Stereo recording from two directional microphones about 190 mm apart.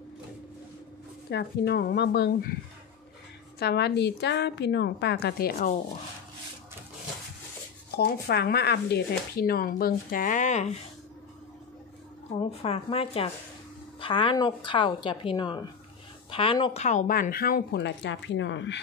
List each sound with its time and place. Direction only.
1.3 s a woman's voice: 60° left (ahead or behind)
3.5 s a woman's voice: 60° left (ahead or behind)
7.9 s speech: 55° left (ahead or behind); by 10.8 s 40° left (ahead or behind)
12.4 s a woman's voice: 30° left (ahead or behind)
16.8 s speech: 45° left (ahead or behind); by 18.8 s 70° left (ahead or behind)